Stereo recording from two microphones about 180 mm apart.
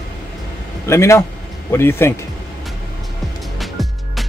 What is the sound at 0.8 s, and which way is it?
Speech, 15° left (ahead or behind).